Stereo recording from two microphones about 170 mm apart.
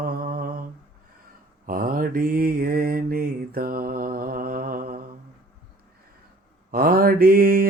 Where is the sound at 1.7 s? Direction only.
55° right (ahead or behind).